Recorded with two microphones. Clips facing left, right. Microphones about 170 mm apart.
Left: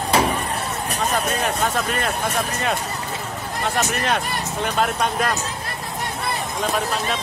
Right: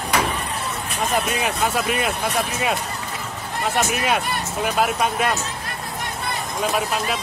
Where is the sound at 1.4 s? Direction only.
5° right (ahead or behind).